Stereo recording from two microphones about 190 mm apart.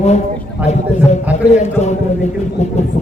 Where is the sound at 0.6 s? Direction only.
10° right (ahead or behind).